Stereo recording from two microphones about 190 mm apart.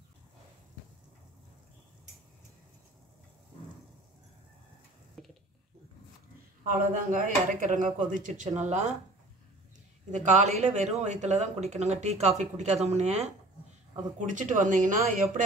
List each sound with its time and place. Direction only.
5.2 s a sound: centre (ahead or behind)
6.6 s speech: 45° right (ahead or behind)
10.1 s speech: 40° right (ahead or behind)